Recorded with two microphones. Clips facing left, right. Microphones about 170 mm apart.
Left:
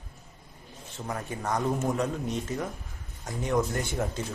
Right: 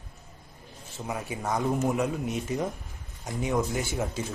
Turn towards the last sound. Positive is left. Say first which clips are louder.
# even
turn(degrees=-5)  # may be behind; listen again after turning